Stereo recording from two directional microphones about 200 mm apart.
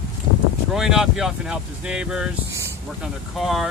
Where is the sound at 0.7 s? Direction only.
Centre (ahead or behind).